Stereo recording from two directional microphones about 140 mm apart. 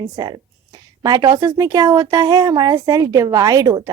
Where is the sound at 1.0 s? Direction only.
30° right (ahead or behind).